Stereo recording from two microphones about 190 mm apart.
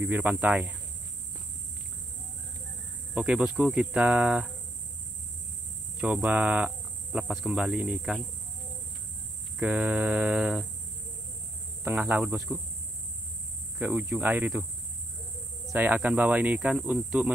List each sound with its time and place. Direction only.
0.0 s speech: 10° right (ahead or behind)
3.2 s speech: 5° right (ahead or behind)
5.9 s speech: centre (ahead or behind)
9.6 s speech: 5° right (ahead or behind)
11.8 s speech: 10° right (ahead or behind)
13.7 s speech: 10° right (ahead or behind)